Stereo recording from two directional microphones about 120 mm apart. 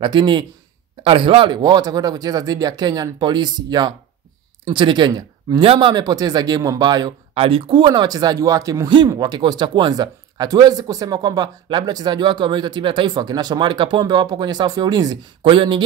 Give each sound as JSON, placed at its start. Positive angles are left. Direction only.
{"t": 0.0, "sound": "speech", "side_deg": -40}
{"t": 7.3, "sound": "speech", "side_deg": -50}